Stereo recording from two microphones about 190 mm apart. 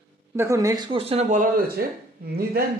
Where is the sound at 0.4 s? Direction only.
15° right (ahead or behind).